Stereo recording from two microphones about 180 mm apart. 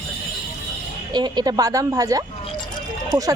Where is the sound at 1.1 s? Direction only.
25° right (ahead or behind).